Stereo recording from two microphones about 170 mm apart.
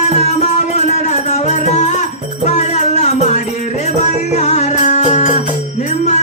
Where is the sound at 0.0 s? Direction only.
40° left (ahead or behind).